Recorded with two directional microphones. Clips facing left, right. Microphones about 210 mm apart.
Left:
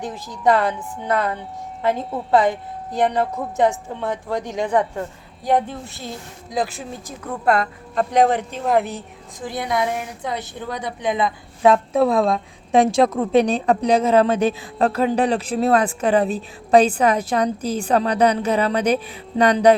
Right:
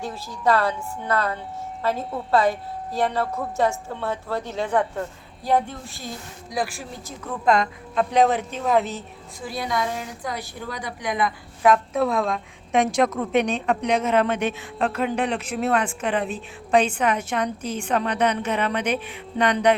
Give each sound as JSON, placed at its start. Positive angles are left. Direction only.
{"t": 0.0, "sound": "a woman's voice", "side_deg": 20}
{"t": 7.4, "sound": "a woman's voice", "side_deg": 5}